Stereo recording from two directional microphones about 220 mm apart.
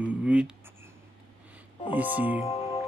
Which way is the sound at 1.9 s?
10° right (ahead or behind).